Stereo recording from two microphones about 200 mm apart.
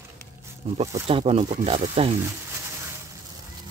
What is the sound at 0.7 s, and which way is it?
Speech, 30° right (ahead or behind).